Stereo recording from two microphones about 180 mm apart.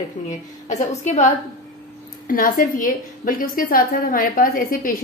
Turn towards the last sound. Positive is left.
turn(degrees=50)  # may be behind; listen again after turning